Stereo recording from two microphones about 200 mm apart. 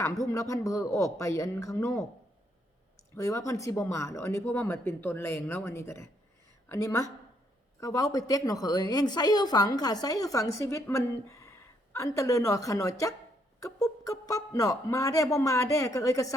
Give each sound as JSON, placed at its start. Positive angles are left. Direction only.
{"t": 0.3, "sound": "speech", "side_deg": 15}
{"t": 3.2, "sound": "a woman's voice", "side_deg": 15}